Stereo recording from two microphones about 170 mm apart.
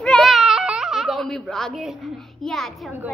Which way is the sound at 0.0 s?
5° left (ahead or behind).